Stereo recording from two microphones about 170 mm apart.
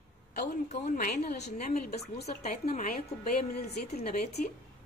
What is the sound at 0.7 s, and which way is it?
A woman's voice, 50° left (ahead or behind).